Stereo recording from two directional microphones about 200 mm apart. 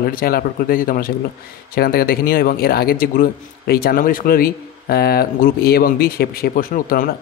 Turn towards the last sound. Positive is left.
turn(degrees=45)  # may be behind; listen again after turning